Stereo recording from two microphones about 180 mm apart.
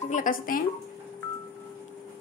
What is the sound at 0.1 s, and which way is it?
Speech, 50° left (ahead or behind).